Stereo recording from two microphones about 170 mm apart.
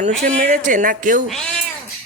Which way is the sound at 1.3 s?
5° left (ahead or behind).